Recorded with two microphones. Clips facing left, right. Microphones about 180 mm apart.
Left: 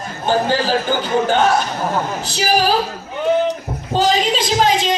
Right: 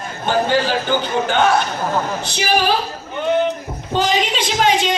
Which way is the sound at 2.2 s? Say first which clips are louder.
Left 1 dB; 40° left (ahead or behind).